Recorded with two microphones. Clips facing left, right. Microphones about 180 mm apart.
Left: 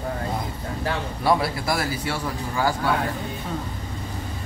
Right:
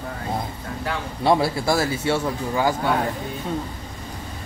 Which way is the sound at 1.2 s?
25° right (ahead or behind).